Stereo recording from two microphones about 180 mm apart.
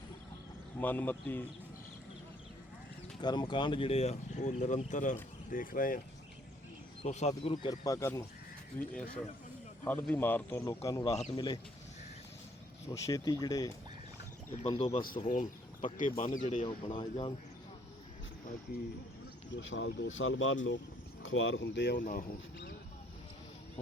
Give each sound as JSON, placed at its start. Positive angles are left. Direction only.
{"t": 0.8, "sound": "speech", "side_deg": 10}
{"t": 3.2, "sound": "speech", "side_deg": 25}
{"t": 7.0, "sound": "speech", "side_deg": 40}
{"t": 7.5, "sound": "speech", "side_deg": 25}
{"t": 9.8, "sound": "speech", "side_deg": 10}
{"t": 11.2, "sound": "speech", "side_deg": 30}
{"t": 12.9, "sound": "speech", "side_deg": 20}
{"t": 14.5, "sound": "speech", "side_deg": 40}
{"t": 15.0, "sound": "speech", "side_deg": 50}
{"t": 16.6, "sound": "speech", "side_deg": 25}
{"t": 19.5, "sound": "speech", "side_deg": 90}
{"t": 21.9, "sound": "speech", "side_deg": 50}